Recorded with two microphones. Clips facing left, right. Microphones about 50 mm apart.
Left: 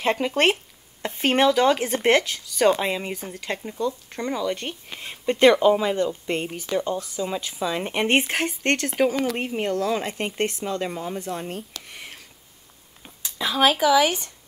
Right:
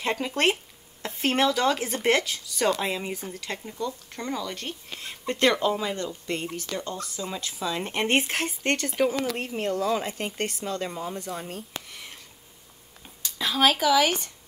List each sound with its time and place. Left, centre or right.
0.0 s speech: centre
2.2 s speech: centre; by 8.5 s left
8.5 s speech: centre
9.8 s speech: centre
10.1 s speech: left
11.9 s a sound: centre